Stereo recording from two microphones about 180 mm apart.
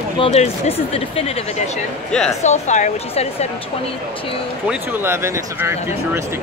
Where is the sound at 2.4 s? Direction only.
40° left (ahead or behind).